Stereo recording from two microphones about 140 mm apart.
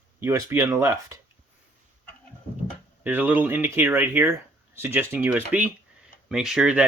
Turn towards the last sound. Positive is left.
turn(degrees=-5)  # may be behind; listen again after turning